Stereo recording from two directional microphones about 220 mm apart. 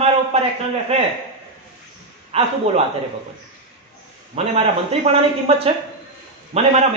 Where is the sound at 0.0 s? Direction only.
25° right (ahead or behind).